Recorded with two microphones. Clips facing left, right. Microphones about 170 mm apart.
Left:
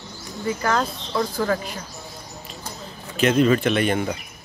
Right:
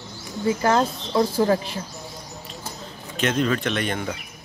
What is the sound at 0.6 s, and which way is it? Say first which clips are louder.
Speech: right 3 dB; 25° right (ahead or behind).